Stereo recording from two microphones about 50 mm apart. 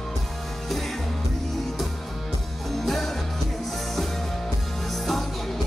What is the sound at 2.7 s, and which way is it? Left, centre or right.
Music, centre.